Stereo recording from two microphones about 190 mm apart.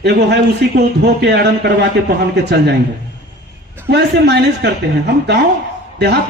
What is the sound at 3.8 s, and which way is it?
Speech, 60° right (ahead or behind).